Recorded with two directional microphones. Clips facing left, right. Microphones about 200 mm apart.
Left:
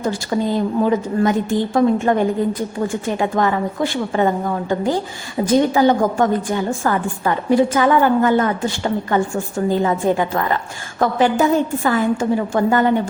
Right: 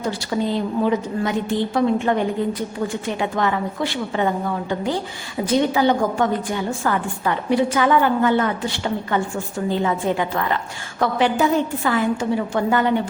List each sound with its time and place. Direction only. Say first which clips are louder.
0.0 s a woman's voice: left 3 dB; 45° left (ahead or behind)
5.5 s a woman's voice: left 3 dB; 45° left (ahead or behind)